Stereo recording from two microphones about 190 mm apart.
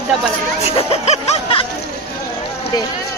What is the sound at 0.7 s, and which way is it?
Snicker, 30° left (ahead or behind).